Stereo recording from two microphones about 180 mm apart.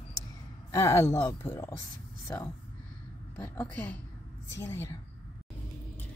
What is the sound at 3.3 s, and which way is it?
A woman's voice, 10° left (ahead or behind).